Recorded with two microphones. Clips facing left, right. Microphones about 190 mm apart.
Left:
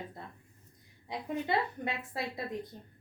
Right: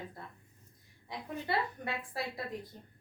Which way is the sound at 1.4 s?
20° left (ahead or behind).